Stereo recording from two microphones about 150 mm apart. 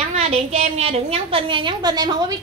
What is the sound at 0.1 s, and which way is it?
A woman's voice, 45° right (ahead or behind).